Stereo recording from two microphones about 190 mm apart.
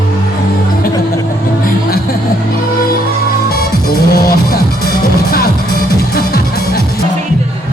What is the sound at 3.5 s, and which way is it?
Music, 55° left (ahead or behind).